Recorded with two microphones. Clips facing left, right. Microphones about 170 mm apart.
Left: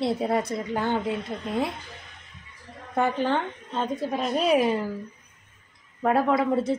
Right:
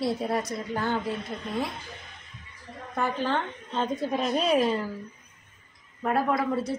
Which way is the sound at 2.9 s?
15° left (ahead or behind).